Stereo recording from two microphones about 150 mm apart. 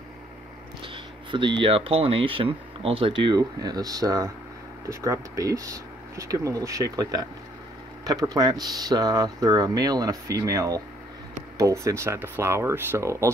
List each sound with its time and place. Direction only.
0.8 s speech: 35° right (ahead or behind)